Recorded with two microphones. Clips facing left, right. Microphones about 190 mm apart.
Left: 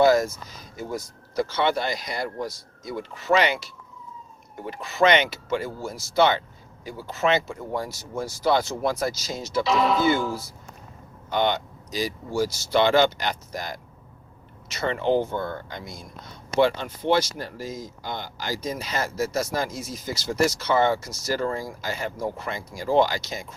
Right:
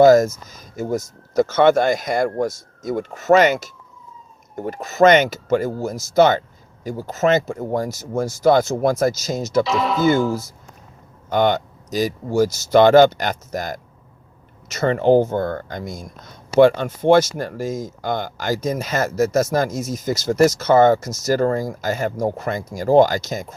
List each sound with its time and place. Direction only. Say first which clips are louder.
0.0 s speech: right 7 dB; 45° right (ahead or behind)
9.6 s speech: right 2 dB; centre (ahead or behind)
11.3 s speech: right 6 dB; 45° right (ahead or behind)